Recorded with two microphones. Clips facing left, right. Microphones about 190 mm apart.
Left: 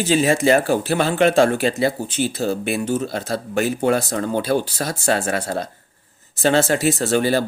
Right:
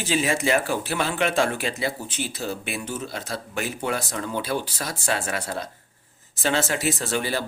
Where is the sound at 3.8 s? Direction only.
30° left (ahead or behind).